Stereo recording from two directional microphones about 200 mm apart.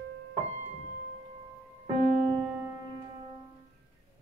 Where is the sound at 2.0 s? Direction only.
30° right (ahead or behind).